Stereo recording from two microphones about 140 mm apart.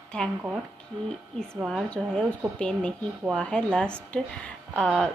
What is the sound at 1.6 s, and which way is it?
A woman's voice, 5° left (ahead or behind).